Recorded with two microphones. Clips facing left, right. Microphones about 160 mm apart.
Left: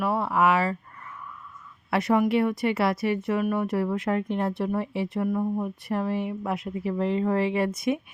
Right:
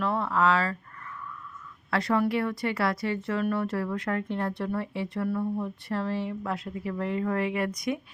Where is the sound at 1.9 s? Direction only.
20° left (ahead or behind).